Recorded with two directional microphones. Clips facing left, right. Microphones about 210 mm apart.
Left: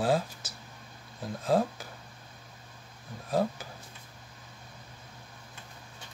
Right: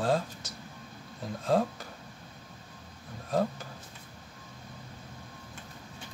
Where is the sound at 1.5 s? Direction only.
5° left (ahead or behind).